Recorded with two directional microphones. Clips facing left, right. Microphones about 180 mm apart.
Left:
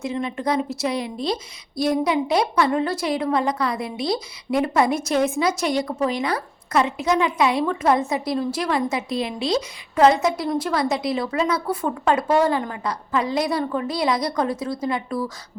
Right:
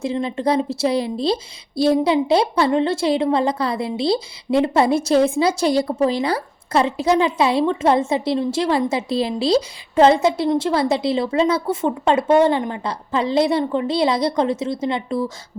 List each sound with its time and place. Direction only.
0.0 s a woman's voice: 30° right (ahead or behind)